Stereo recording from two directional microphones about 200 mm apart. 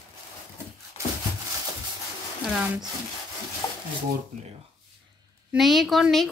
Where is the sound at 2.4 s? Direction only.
Centre (ahead or behind).